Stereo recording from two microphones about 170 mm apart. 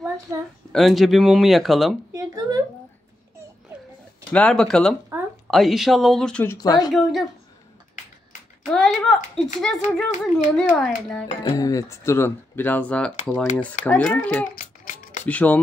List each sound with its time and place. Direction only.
0.3 s a woman's voice: 20° right (ahead or behind)
0.7 s speech: centre (ahead or behind)
2.1 s a sound: 20° right (ahead or behind)
4.3 s speech: 5° left (ahead or behind); by 6.9 s 20° left (ahead or behind)
6.9 s speech: centre (ahead or behind)
8.6 s speech: centre (ahead or behind)
11.4 s speech: 20° left (ahead or behind)
14.5 s a sound: 50° left (ahead or behind)
15.2 s speech: 10° left (ahead or behind)